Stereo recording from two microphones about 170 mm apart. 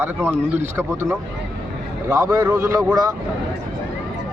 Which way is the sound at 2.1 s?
20° right (ahead or behind).